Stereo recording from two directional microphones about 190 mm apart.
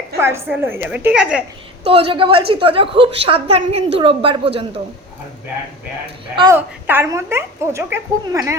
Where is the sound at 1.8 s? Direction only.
30° right (ahead or behind).